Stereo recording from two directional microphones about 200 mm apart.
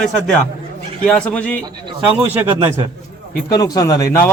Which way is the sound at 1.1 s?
5° left (ahead or behind).